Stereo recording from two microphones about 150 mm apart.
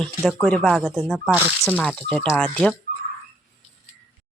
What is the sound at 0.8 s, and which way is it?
Speech, 10° right (ahead or behind).